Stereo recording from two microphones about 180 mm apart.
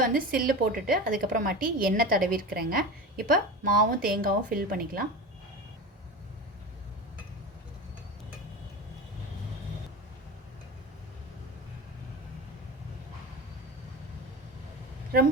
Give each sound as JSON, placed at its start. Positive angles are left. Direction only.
{"t": 0.0, "sound": "a woman's voice", "side_deg": -50}